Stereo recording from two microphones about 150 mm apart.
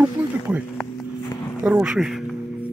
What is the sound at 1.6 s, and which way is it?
Speech, 5° right (ahead or behind).